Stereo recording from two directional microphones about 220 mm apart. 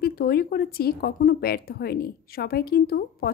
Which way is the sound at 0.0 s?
45° left (ahead or behind).